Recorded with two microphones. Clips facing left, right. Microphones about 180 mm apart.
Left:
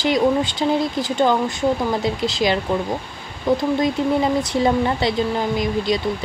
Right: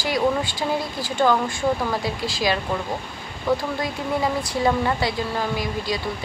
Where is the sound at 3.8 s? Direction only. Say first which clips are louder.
Left 6 dB; 20° left (ahead or behind).